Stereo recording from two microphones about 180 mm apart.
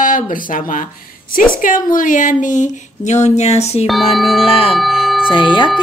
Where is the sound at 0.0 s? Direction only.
50° left (ahead or behind).